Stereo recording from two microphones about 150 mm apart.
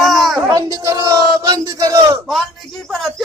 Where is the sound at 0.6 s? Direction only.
25° right (ahead or behind).